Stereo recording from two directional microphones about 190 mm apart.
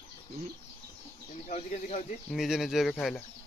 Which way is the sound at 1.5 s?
40° left (ahead or behind).